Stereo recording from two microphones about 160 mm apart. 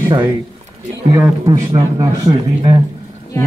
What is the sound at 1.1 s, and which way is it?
A man's voice, 20° right (ahead or behind).